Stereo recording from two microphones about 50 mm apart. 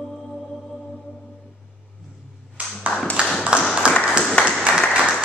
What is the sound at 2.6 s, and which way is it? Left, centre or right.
Ping, right.